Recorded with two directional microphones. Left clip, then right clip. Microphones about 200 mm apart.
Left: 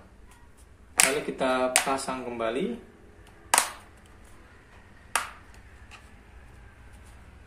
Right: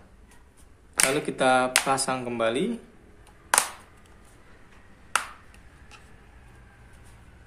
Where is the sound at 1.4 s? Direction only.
55° right (ahead or behind).